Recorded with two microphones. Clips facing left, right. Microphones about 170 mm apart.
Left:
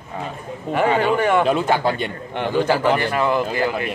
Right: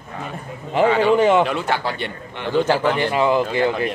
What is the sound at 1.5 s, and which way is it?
A man's voice, 20° left (ahead or behind).